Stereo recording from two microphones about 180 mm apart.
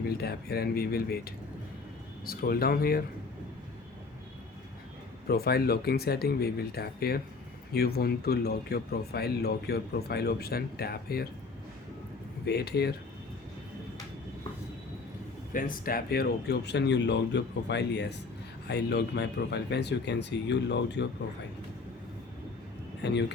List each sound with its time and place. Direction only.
0.0 s speech: 60° left (ahead or behind)
5.3 s speech: 60° left (ahead or behind)
12.5 s speech: 65° left (ahead or behind)
15.5 s speech: 50° left (ahead or behind); by 21.1 s 75° left (ahead or behind)
23.0 s speech: 70° left (ahead or behind)